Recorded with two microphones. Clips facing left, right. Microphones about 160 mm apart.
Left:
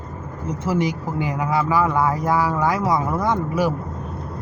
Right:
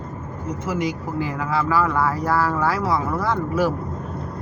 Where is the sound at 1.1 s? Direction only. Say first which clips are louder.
Left 2 dB; 20° left (ahead or behind).